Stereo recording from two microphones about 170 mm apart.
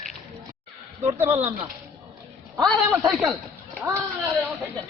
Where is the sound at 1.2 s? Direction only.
35° right (ahead or behind).